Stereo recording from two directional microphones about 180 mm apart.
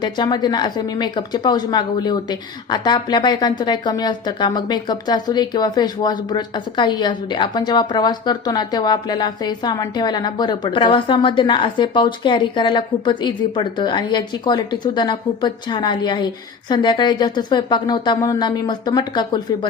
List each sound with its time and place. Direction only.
0.0 s speech: 25° left (ahead or behind)